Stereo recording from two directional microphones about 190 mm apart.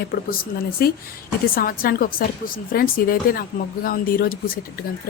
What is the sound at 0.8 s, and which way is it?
Speech, 50° left (ahead or behind).